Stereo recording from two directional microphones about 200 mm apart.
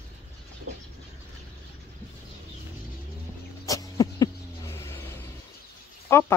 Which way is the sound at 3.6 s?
15° left (ahead or behind).